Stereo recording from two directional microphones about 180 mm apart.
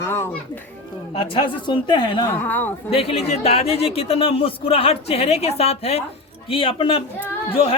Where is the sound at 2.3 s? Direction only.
10° left (ahead or behind).